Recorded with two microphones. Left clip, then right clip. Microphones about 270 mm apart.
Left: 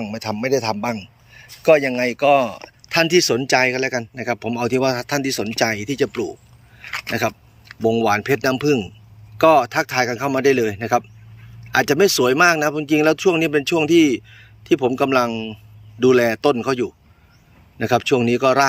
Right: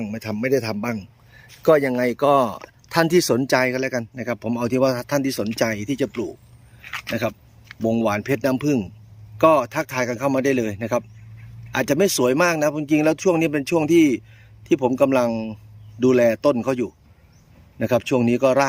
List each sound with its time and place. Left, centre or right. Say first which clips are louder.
0.0 s speech: left 2 dB; centre